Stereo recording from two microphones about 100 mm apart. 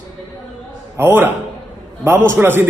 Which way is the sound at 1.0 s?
20° right (ahead or behind).